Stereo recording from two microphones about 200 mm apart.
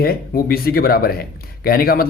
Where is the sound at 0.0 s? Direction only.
50° left (ahead or behind).